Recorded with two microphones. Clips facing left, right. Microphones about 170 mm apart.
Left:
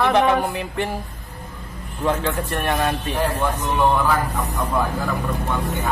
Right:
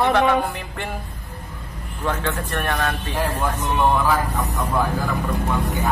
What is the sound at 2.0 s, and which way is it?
A man's voice, 15° left (ahead or behind).